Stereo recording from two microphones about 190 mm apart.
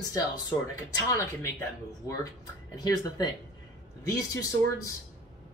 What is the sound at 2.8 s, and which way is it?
Speech, 20° left (ahead or behind).